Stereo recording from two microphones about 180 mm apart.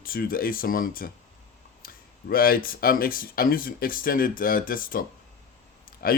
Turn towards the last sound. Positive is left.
turn(degrees=55)  # may be behind; listen again after turning